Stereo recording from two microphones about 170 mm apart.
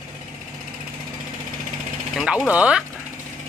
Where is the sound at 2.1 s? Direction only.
5° right (ahead or behind).